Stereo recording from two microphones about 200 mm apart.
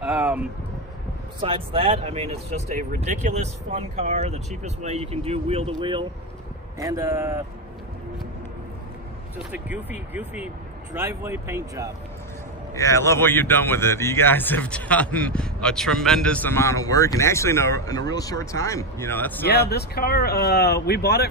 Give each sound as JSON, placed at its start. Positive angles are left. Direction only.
{"t": 0.0, "sound": "a sound", "side_deg": -10}
{"t": 1.4, "sound": "speech", "side_deg": -25}
{"t": 9.4, "sound": "speech", "side_deg": -10}
{"t": 12.7, "sound": "speech", "side_deg": 15}
{"t": 19.4, "sound": "speech", "side_deg": 55}